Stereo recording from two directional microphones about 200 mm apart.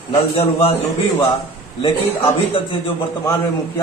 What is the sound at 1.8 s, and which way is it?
Speech, 25° left (ahead or behind).